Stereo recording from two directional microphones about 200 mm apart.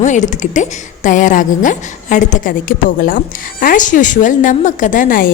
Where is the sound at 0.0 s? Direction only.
40° left (ahead or behind).